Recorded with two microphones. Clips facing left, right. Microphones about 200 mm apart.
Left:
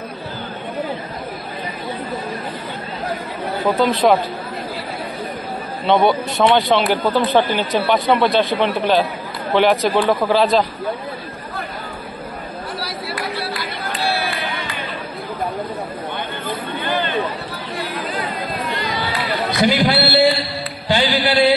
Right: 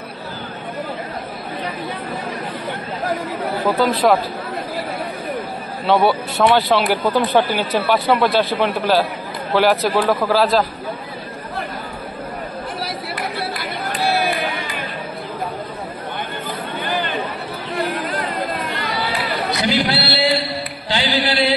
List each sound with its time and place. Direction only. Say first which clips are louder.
3.4 s speech: left 1 dB; 5° right (ahead or behind)
5.9 s a man's voice: left 1 dB; 5° right (ahead or behind)
19.7 s speech: left 3 dB; 50° left (ahead or behind)
20.9 s music: left 3 dB; 50° left (ahead or behind)